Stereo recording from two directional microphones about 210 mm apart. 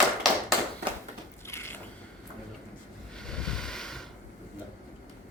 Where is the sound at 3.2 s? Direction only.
5° left (ahead or behind).